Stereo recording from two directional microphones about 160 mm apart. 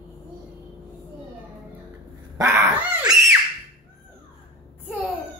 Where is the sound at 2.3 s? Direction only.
20° right (ahead or behind).